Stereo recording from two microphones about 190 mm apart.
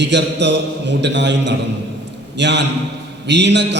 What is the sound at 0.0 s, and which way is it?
A man's voice, 65° right (ahead or behind).